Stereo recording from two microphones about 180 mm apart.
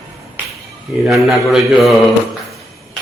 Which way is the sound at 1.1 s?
Centre (ahead or behind).